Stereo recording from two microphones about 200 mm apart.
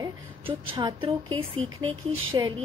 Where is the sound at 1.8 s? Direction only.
90° right.